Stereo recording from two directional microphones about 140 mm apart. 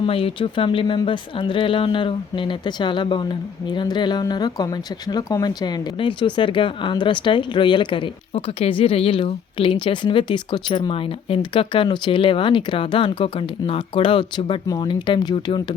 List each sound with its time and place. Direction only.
0.0 s speech: 40° left (ahead or behind)